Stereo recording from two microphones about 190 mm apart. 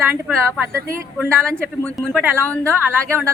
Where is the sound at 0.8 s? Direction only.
15° right (ahead or behind).